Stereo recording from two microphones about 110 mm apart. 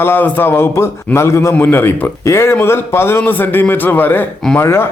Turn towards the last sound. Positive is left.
turn(degrees=20)  # may be behind; listen again after turning